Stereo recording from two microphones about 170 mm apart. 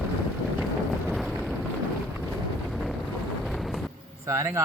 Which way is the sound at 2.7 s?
Centre (ahead or behind).